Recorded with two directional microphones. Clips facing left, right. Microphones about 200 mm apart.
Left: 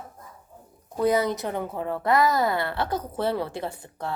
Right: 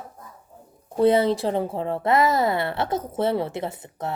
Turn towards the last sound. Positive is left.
turn(degrees=-25)  # may be behind; listen again after turning